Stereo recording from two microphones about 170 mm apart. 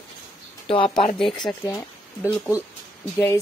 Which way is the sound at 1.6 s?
20° left (ahead or behind).